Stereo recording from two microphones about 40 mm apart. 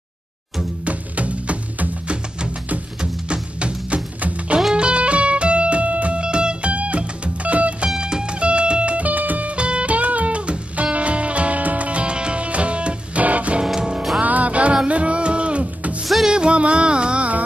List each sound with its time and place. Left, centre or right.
0.8 s music: right
8.0 s music: right
9.6 s music: right
13.7 s music: centre
14.2 s music: right